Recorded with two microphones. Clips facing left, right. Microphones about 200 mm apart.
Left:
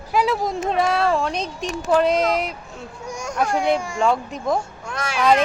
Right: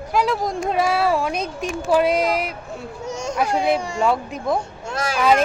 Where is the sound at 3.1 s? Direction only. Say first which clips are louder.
Right 3 dB; 25° right (ahead or behind).